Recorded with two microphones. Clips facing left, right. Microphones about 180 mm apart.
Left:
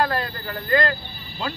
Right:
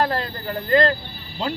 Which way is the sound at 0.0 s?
25° right (ahead or behind).